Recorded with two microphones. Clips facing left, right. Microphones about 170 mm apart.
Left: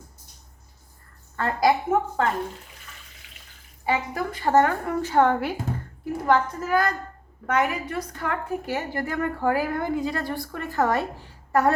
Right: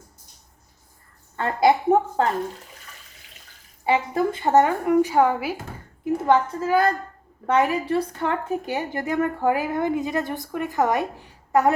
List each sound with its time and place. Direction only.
1.4 s a woman's voice: 30° right (ahead or behind)
3.8 s speech: 25° right (ahead or behind); by 5.5 s 5° right (ahead or behind)
6.2 s a woman's voice: 25° right (ahead or behind)